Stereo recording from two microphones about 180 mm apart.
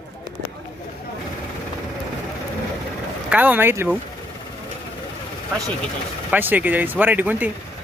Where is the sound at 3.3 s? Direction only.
10° right (ahead or behind).